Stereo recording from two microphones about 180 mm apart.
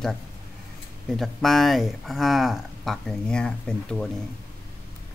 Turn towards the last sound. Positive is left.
turn(degrees=5)  # may be behind; listen again after turning